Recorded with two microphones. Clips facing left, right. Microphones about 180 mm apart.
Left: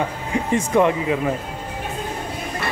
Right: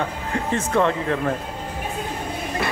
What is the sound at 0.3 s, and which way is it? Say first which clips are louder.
Speech: left 3 dB; 15° left (ahead or behind).